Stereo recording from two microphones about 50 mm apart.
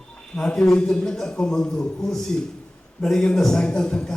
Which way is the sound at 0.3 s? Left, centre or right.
Centre.